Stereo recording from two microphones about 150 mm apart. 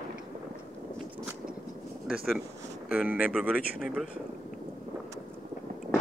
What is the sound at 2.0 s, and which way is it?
Speech, centre (ahead or behind).